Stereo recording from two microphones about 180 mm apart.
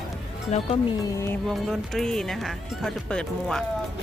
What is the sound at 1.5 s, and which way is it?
Speech, centre (ahead or behind).